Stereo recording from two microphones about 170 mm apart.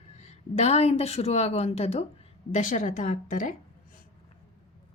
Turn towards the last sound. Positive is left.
turn(degrees=50)  # may be behind; listen again after turning